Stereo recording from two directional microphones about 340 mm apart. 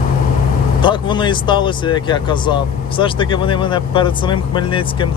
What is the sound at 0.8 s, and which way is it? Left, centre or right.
Speech, centre.